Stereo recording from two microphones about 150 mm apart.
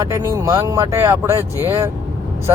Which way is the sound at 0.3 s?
20° right (ahead or behind).